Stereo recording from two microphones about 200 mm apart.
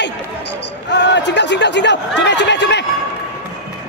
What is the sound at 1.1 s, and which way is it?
Speech, 60° left (ahead or behind).